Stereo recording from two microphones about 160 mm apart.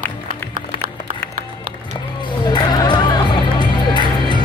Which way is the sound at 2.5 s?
25° left (ahead or behind).